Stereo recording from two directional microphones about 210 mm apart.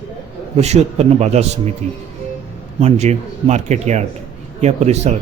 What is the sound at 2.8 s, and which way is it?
Speech, 30° right (ahead or behind).